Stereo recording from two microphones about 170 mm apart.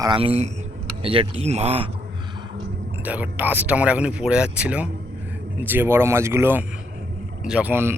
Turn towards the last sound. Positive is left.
turn(degrees=-15)  # may be behind; listen again after turning